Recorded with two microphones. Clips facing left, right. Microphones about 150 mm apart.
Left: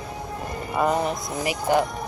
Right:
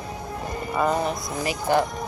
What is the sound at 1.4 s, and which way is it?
Speech, 15° left (ahead or behind).